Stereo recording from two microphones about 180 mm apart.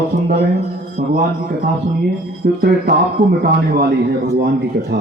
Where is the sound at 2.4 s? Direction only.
65° right (ahead or behind).